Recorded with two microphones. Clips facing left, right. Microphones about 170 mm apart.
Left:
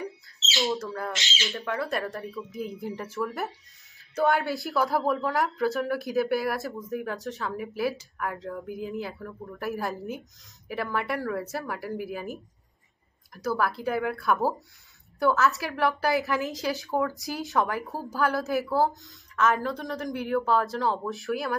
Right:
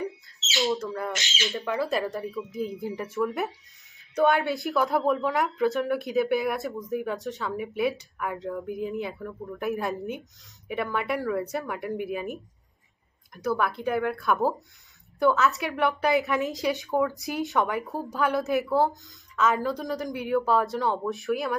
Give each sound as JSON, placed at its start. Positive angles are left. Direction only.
{"t": 0.6, "sound": "a woman's voice", "side_deg": 0}
{"t": 4.4, "sound": "speech", "side_deg": -20}
{"t": 4.7, "sound": "a woman's voice", "side_deg": 0}
{"t": 13.3, "sound": "a woman's voice", "side_deg": 0}